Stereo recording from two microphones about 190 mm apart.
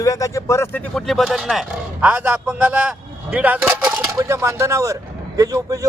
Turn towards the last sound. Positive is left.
turn(degrees=-20)  # may be behind; listen again after turning